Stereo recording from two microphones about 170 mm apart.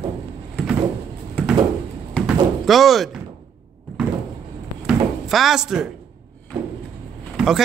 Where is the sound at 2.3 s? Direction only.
Centre (ahead or behind).